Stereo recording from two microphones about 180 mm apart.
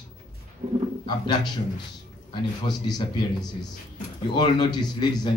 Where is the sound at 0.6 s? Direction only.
45° right (ahead or behind).